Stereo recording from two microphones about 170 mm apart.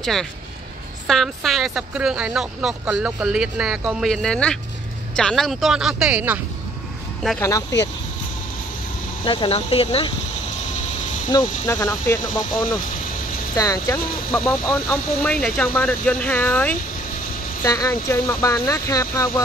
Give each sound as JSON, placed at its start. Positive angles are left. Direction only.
{"t": 0.0, "sound": "speech", "side_deg": 0}
{"t": 7.3, "sound": "speech", "side_deg": 15}
{"t": 9.2, "sound": "speech", "side_deg": 30}
{"t": 11.3, "sound": "speech", "side_deg": 20}